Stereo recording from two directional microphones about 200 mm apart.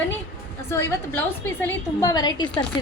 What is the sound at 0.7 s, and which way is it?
A woman's voice, 10° left (ahead or behind).